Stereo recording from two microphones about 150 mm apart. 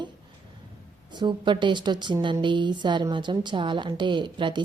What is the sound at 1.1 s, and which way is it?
A woman's voice, 30° right (ahead or behind).